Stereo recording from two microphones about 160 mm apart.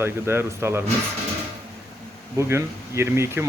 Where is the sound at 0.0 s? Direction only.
15° right (ahead or behind).